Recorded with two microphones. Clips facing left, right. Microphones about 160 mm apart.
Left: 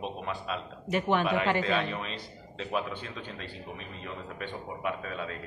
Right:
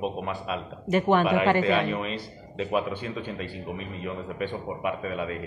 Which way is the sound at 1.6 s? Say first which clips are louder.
Right 6 dB; 10° right (ahead or behind).